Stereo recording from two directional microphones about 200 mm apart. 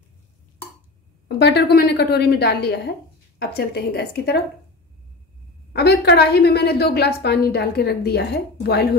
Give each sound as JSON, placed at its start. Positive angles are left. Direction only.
{"t": 1.4, "sound": "a woman's voice", "side_deg": 55}
{"t": 5.7, "sound": "a woman's voice", "side_deg": 55}